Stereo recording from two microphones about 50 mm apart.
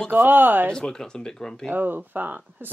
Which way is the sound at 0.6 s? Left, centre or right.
Centre.